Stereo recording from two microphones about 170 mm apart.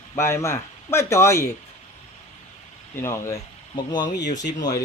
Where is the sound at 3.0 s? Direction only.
15° left (ahead or behind).